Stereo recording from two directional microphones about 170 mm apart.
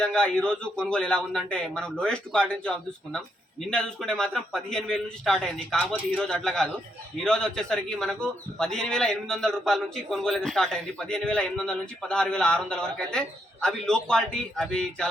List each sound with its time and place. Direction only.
0.0 s a man's voice: 5° left (ahead or behind)